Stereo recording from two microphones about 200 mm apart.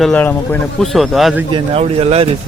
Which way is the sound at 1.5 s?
30° right (ahead or behind).